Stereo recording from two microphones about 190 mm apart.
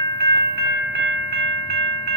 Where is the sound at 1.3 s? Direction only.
30° left (ahead or behind).